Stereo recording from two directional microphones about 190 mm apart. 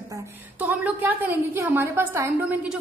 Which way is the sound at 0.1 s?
15° right (ahead or behind).